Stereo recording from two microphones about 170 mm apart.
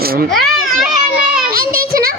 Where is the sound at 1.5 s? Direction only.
60° right (ahead or behind).